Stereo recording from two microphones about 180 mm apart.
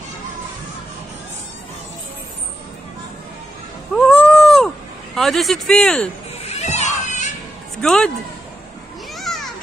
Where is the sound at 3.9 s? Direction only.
5° left (ahead or behind).